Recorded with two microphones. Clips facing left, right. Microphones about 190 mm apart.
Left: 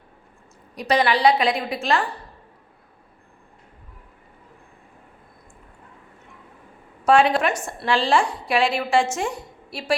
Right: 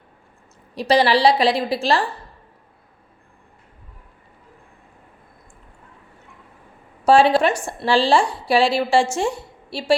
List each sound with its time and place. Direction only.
0.8 s a woman's voice: 30° right (ahead or behind)
7.0 s a woman's voice: 30° right (ahead or behind)